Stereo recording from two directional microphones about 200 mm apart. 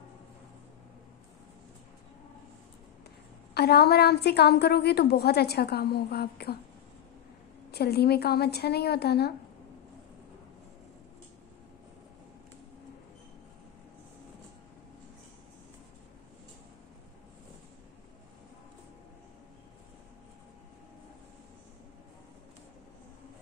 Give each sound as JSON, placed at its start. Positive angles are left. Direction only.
{"t": 3.5, "sound": "a woman's voice", "side_deg": 50}
{"t": 7.7, "sound": "a woman's voice", "side_deg": 55}